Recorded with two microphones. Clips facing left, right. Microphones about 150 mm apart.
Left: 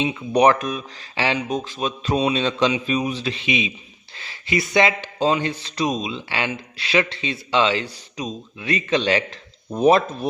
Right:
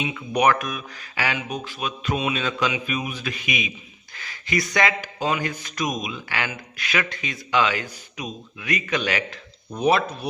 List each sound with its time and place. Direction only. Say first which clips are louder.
0.0 s speech: left 4 dB; 30° left (ahead or behind)